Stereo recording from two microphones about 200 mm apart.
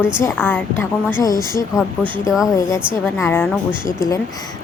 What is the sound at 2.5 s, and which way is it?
A woman's voice, 15° left (ahead or behind).